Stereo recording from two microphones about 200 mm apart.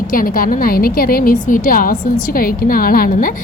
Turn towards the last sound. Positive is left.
turn(degrees=45)  # may be behind; listen again after turning